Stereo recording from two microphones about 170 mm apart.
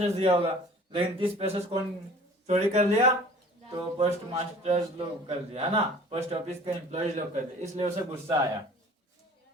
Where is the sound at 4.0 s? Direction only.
35° right (ahead or behind).